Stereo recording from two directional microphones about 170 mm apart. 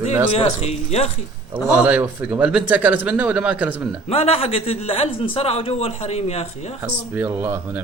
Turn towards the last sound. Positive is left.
turn(degrees=-10)  # may be behind; listen again after turning